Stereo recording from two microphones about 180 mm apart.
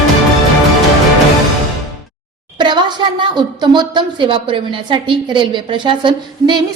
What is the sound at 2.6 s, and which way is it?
A woman's voice, 25° right (ahead or behind).